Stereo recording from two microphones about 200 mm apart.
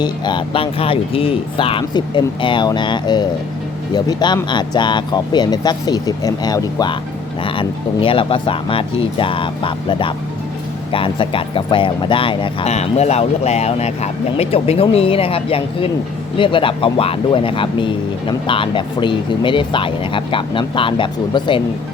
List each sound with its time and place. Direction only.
0.0 s speech: 20° left (ahead or behind)